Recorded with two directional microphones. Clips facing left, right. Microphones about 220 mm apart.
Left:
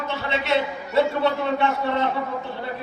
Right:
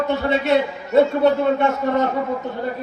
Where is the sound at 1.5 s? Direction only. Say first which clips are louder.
Right 4 dB; 45° right (ahead or behind).